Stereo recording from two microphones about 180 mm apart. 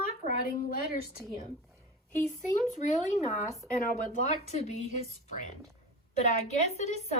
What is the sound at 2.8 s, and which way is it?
Speech, 35° left (ahead or behind).